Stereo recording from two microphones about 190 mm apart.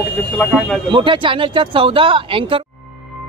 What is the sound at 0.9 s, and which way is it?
Speech, 25° right (ahead or behind).